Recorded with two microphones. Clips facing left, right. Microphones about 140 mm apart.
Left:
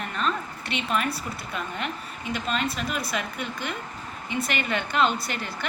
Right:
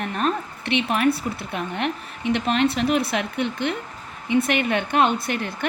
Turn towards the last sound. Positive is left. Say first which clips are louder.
# right 4 dB
turn(degrees=-55)  # may be behind; listen again after turning